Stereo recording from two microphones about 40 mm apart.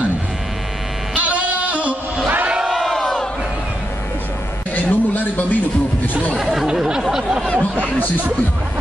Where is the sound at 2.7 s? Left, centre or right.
Centre.